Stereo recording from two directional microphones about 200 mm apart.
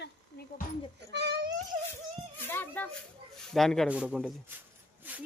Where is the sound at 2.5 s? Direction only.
10° left (ahead or behind).